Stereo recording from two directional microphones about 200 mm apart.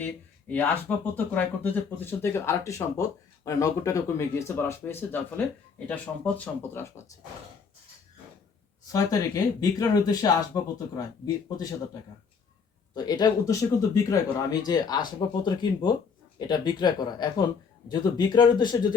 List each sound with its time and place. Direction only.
0.0 s speech: 10° left (ahead or behind)
8.9 s speech: 20° left (ahead or behind)
12.9 s speech: 20° left (ahead or behind)